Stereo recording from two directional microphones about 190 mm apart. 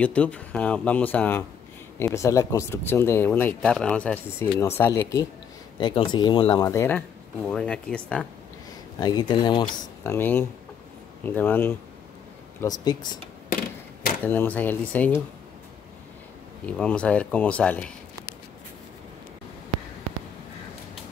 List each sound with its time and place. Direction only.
0.0 s speech: 5° left (ahead or behind)
9.0 s speech: 20° left (ahead or behind)
9.7 s speech: 10° left (ahead or behind)
12.5 s speech: 20° left (ahead or behind)
14.2 s speech: 10° left (ahead or behind)
16.6 s speech: 5° left (ahead or behind)